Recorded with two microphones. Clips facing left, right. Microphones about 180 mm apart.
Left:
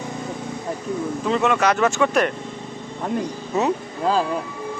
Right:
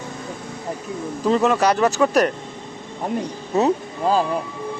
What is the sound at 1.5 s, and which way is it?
Speech, 35° right (ahead or behind).